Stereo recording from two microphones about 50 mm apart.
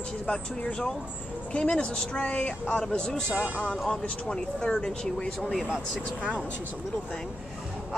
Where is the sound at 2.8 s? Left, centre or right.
Centre.